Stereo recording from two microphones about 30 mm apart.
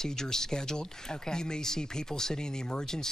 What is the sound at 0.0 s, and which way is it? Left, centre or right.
Speech, centre.